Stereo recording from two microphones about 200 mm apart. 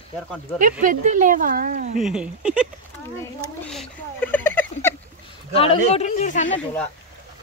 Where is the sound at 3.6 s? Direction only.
5° left (ahead or behind).